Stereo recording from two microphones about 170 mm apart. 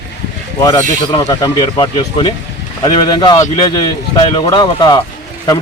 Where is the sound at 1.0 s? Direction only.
25° left (ahead or behind).